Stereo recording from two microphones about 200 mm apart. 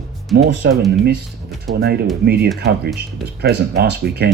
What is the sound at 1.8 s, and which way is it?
Speech, 50° right (ahead or behind).